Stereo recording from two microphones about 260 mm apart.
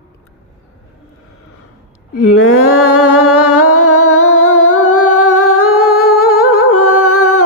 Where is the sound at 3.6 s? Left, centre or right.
Left.